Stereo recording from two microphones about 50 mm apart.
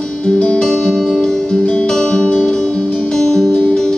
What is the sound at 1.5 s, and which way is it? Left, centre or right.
Music, left.